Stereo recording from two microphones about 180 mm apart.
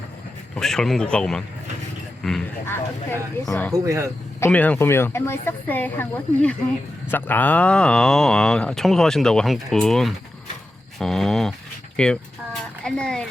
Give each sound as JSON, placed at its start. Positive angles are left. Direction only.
{"t": 0.5, "sound": "speech", "side_deg": 5}
{"t": 3.7, "sound": "speech", "side_deg": -15}
{"t": 4.4, "sound": "speech", "side_deg": 10}